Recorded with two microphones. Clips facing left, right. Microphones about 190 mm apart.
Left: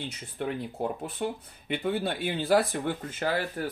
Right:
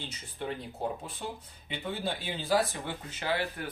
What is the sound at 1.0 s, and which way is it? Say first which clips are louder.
Speech: left 7 dB; 60° left (ahead or behind).